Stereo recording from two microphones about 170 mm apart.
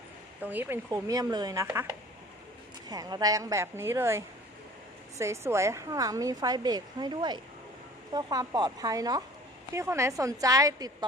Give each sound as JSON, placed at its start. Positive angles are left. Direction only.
{"t": 0.4, "sound": "a woman's voice", "side_deg": -10}